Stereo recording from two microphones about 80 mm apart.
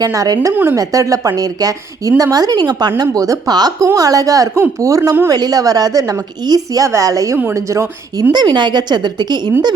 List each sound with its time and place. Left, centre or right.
0.0 s a woman's voice: right
0.5 s speech: right
0.8 s a woman's voice: right
8.3 s a woman's voice: right